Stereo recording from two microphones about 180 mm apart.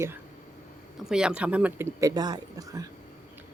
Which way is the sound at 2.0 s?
20° right (ahead or behind).